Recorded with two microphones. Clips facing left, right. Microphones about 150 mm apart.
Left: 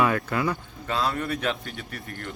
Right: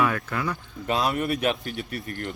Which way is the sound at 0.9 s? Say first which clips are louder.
Right 2 dB; 20° right (ahead or behind).